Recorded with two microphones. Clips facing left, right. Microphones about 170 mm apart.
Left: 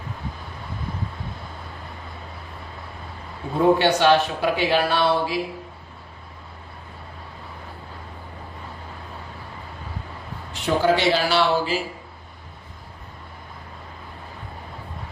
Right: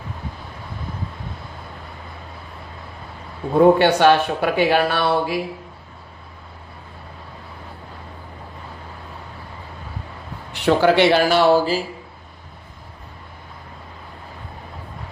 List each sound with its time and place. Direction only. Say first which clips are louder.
3.6 s speech: right 4 dB; 55° right (ahead or behind)
10.5 s speech: right 4 dB; 70° right (ahead or behind); by 11.8 s 40° right (ahead or behind)